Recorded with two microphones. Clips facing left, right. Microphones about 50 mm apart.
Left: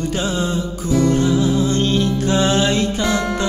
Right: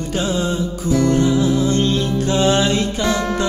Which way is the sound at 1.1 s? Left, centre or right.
Centre.